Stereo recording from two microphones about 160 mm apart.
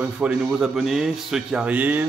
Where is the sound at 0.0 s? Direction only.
10° right (ahead or behind).